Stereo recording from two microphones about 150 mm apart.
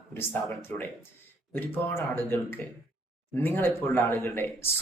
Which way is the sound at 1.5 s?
15° left (ahead or behind).